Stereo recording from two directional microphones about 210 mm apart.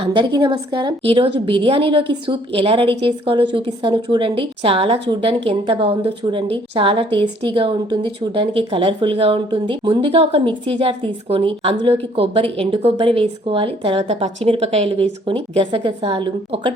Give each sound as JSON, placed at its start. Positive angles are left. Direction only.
{"t": 0.0, "sound": "speech", "side_deg": -25}